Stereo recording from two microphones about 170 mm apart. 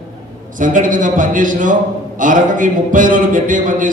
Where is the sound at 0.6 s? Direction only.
50° right (ahead or behind).